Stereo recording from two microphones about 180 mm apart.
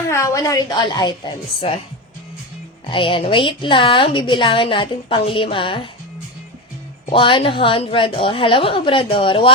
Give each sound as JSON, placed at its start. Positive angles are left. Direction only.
{"t": 0.1, "sound": "a woman's voice", "side_deg": 15}
{"t": 2.9, "sound": "a woman's voice", "side_deg": 30}
{"t": 7.1, "sound": "a woman's voice", "side_deg": 30}